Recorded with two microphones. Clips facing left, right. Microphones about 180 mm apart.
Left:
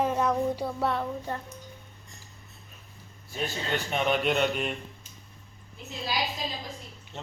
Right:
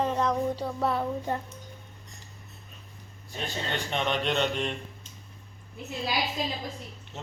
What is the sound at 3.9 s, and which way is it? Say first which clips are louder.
Speech: left 3 dB; 5° left (ahead or behind).